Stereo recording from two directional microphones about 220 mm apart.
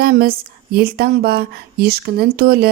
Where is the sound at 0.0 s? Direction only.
40° right (ahead or behind).